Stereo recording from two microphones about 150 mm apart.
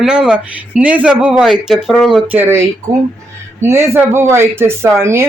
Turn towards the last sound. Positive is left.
turn(degrees=-15)  # may be behind; listen again after turning